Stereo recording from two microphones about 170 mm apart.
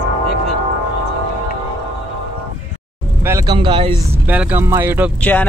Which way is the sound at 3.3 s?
25° right (ahead or behind).